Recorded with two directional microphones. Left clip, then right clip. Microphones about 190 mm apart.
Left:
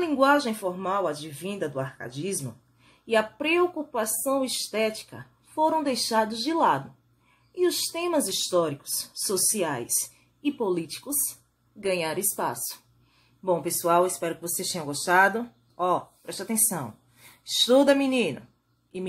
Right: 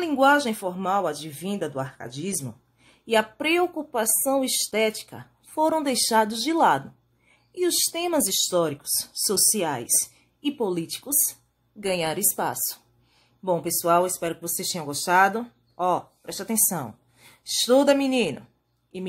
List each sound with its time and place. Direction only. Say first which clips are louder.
0.0 s speech: right 2 dB; 35° right (ahead or behind)